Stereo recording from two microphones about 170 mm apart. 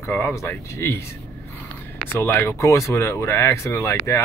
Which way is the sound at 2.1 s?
15° left (ahead or behind).